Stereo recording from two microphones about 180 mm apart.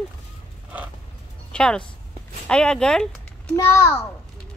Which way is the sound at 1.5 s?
5° left (ahead or behind).